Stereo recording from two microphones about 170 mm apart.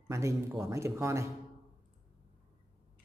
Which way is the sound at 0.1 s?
15° right (ahead or behind).